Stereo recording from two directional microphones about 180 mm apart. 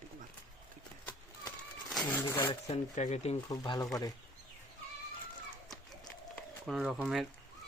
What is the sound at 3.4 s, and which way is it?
Speech, 20° left (ahead or behind).